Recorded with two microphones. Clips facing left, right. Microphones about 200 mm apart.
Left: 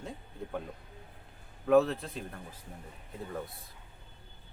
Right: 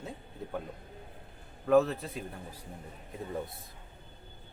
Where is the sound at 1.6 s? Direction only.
Centre (ahead or behind).